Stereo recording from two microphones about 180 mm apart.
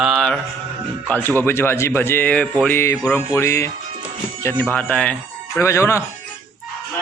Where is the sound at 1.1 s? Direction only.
10° left (ahead or behind).